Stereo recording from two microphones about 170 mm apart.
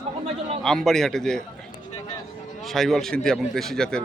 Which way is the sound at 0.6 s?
5° left (ahead or behind).